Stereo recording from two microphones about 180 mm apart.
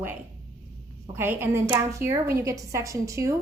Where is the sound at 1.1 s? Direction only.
10° right (ahead or behind).